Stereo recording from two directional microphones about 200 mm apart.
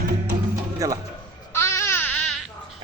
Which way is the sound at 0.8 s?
15° right (ahead or behind).